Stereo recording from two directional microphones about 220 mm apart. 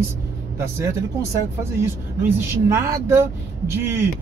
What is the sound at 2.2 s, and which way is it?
Speech, 10° right (ahead or behind).